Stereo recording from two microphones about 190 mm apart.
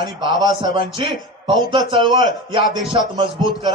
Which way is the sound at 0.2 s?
25° right (ahead or behind).